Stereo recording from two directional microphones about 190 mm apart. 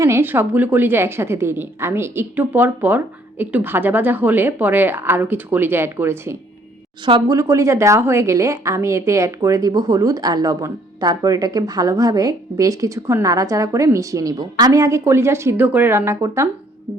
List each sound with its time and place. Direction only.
0.0 s speech: 15° right (ahead or behind)